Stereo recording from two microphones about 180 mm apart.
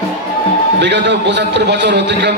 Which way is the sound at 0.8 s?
70° right (ahead or behind).